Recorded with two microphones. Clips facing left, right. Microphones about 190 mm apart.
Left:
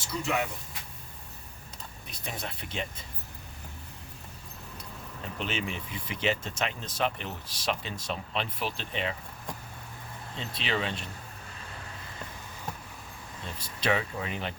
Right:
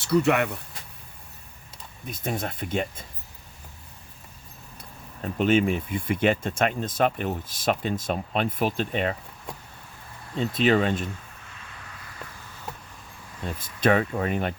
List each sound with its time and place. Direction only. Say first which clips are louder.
0.0 s speech: right 10 dB; 65° right (ahead or behind)
2.0 s speech: right 9 dB; 45° right (ahead or behind)
5.2 s speech: right 13 dB; 50° right (ahead or behind)
10.3 s speech: right 11 dB; 45° right (ahead or behind)
13.6 s speech: right 7 dB; 50° right (ahead or behind)